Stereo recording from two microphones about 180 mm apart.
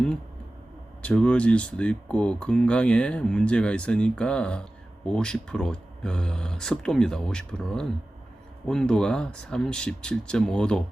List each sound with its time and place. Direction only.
1.0 s speech: 5° left (ahead or behind)